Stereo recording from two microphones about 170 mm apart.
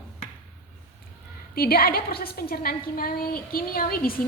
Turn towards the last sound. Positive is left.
turn(degrees=60)  # may be behind; listen again after turning